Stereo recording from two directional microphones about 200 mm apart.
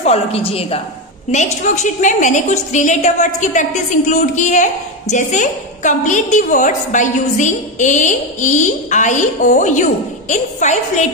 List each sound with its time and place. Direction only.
0.0 s a woman's voice: 30° left (ahead or behind)